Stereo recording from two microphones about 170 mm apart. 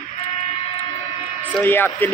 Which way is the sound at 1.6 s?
10° left (ahead or behind).